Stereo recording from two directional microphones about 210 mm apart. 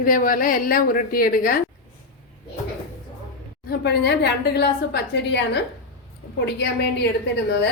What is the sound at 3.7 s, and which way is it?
A woman's voice, 50° left (ahead or behind).